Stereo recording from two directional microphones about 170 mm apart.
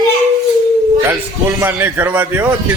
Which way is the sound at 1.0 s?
10° right (ahead or behind).